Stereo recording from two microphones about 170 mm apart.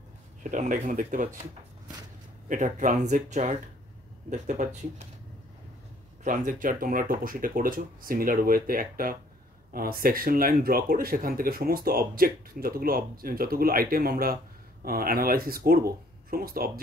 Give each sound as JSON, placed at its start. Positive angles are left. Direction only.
{"t": 0.4, "sound": "speech", "side_deg": -45}
{"t": 6.2, "sound": "speech", "side_deg": -50}